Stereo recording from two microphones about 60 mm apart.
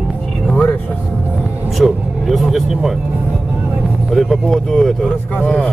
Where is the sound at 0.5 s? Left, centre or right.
Left.